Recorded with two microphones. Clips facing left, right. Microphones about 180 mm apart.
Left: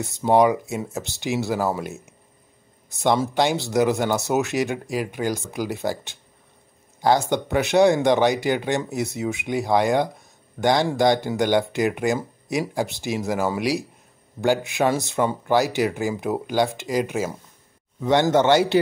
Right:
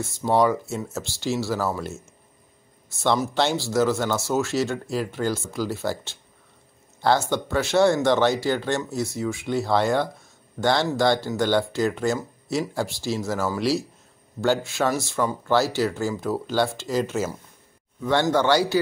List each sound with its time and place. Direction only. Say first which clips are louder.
0.0 s speech: left 3 dB; 20° left (ahead or behind)